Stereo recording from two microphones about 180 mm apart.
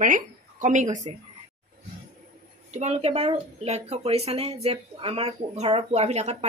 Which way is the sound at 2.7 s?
40° right (ahead or behind).